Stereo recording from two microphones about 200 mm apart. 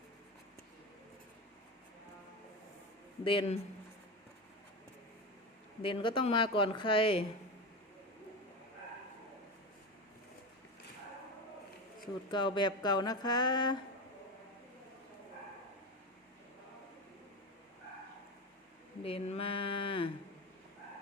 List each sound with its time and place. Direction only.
3.2 s speech: 30° left (ahead or behind)
5.8 s speech: 25° left (ahead or behind)
12.3 s speech: 20° left (ahead or behind)
19.0 s a sound: 30° left (ahead or behind)